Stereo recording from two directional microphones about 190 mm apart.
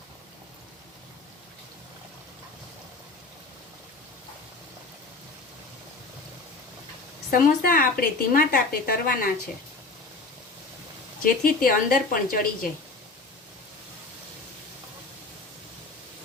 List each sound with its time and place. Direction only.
7.3 s a woman's voice: 45° left (ahead or behind)
11.2 s a woman's voice: 50° left (ahead or behind)